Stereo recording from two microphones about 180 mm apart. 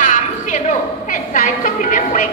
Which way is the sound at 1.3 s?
50° left (ahead or behind).